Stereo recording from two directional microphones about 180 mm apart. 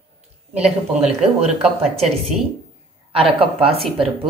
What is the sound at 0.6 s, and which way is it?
Speech, 35° right (ahead or behind).